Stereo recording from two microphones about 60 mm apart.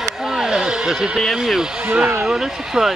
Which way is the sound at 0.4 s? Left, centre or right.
Centre.